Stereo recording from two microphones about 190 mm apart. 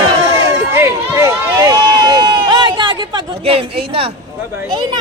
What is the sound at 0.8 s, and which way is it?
Run, 15° right (ahead or behind).